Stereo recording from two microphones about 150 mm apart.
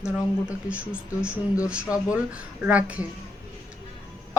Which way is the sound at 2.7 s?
10° right (ahead or behind).